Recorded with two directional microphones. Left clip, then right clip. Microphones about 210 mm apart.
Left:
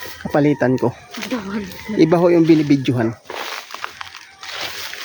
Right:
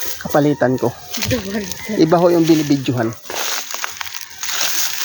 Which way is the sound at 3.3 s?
50° right (ahead or behind).